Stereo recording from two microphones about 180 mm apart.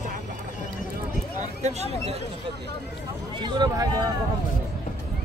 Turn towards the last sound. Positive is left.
turn(degrees=-20)  # may be behind; listen again after turning